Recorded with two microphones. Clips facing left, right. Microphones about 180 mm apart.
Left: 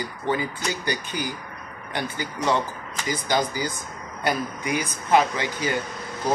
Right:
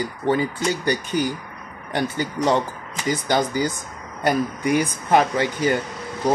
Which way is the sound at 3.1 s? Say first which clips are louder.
Right 3 dB; 50° right (ahead or behind).